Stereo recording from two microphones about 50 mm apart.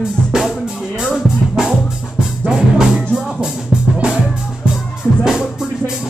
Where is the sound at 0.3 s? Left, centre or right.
Centre.